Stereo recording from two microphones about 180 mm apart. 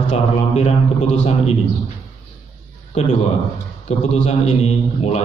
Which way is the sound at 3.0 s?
40° left (ahead or behind).